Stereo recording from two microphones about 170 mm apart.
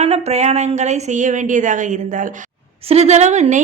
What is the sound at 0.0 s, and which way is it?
A woman's voice, 40° right (ahead or behind).